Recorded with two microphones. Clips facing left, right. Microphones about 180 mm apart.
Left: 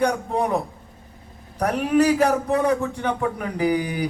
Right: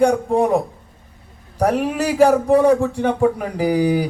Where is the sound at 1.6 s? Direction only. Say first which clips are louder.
Even; 25° right (ahead or behind).